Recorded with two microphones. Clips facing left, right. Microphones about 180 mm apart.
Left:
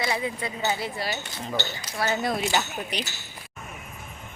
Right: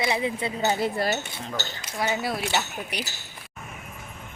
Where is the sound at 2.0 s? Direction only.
10° right (ahead or behind).